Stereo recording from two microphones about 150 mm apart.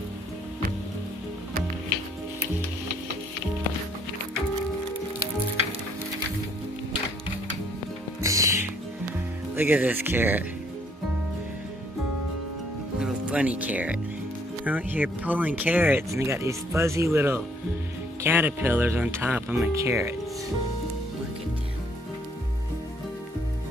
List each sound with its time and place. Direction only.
8.2 s music: 20° right (ahead or behind)
9.6 s speech: 10° right (ahead or behind)
13.0 s speech: 10° right (ahead or behind)